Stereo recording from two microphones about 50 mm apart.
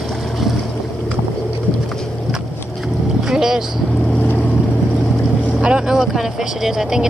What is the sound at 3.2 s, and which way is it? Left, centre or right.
Boat, centre.